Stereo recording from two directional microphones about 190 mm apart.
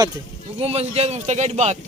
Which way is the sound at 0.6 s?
30° right (ahead or behind).